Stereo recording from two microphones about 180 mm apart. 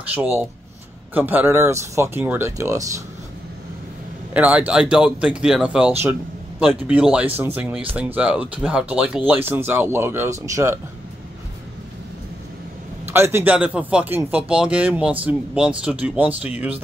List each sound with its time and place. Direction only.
0.1 s speech: 10° right (ahead or behind)
4.3 s speech: 10° right (ahead or behind)
13.0 s speech: 10° right (ahead or behind)